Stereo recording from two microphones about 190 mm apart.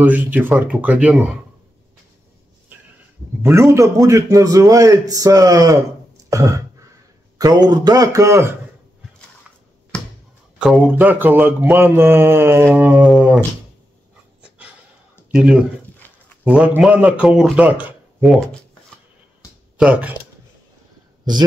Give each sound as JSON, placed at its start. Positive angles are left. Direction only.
{"t": 0.0, "sound": "a man's voice", "side_deg": -10}
{"t": 3.7, "sound": "a man's voice", "side_deg": -15}
{"t": 6.3, "sound": "a sound", "side_deg": -15}
{"t": 7.4, "sound": "a man's voice", "side_deg": -20}
{"t": 10.6, "sound": "a man's voice", "side_deg": -5}
{"t": 12.7, "sound": "a sound", "side_deg": -10}
{"t": 15.3, "sound": "a man's voice", "side_deg": -5}
{"t": 19.8, "sound": "a man's voice", "side_deg": -5}